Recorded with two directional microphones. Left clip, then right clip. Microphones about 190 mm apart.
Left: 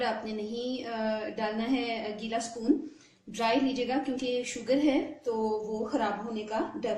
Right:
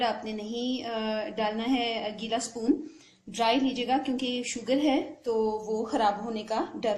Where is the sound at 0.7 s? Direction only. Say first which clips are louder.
Right 1 dB; 35° right (ahead or behind).